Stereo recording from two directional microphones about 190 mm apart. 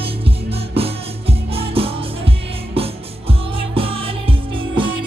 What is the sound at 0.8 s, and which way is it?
Music, 30° right (ahead or behind).